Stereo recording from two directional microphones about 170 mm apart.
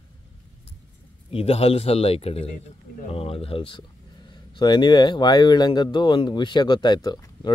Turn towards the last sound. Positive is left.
turn(degrees=25)  # may be behind; listen again after turning